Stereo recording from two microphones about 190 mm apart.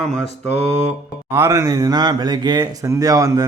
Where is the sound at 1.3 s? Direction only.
15° right (ahead or behind).